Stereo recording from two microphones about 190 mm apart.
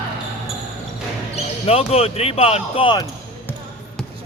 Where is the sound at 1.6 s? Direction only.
30° left (ahead or behind).